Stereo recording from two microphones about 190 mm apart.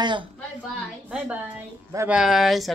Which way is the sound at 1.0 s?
5° right (ahead or behind).